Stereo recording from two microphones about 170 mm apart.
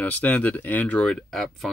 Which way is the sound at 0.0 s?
10° left (ahead or behind).